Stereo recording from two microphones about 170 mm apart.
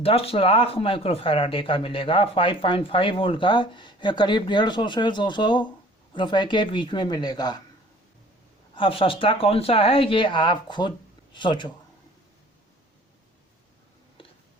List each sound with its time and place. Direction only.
0.0 s a man's voice: 35° left (ahead or behind)
8.7 s speech: 30° left (ahead or behind)